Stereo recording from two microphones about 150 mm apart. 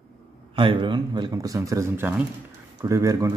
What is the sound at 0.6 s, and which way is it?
Speech, 35° right (ahead or behind).